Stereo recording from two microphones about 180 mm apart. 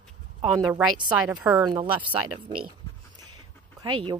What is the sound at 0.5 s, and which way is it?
A woman's voice, 5° right (ahead or behind).